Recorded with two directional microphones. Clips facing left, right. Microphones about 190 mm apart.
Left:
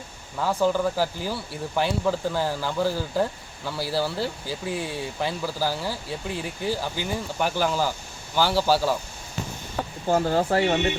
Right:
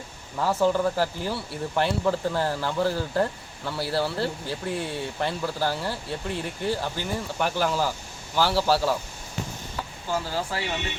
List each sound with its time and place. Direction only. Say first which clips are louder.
0.3 s speech: even; centre (ahead or behind)
9.7 s speech: left 7 dB; 50° left (ahead or behind)